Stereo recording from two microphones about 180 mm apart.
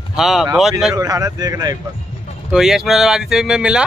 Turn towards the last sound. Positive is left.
turn(degrees=-5)  # may be behind; listen again after turning